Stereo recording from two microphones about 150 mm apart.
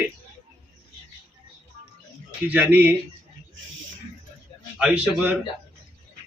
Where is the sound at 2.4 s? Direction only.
10° right (ahead or behind).